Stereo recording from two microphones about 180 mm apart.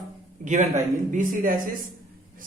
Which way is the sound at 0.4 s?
40° right (ahead or behind).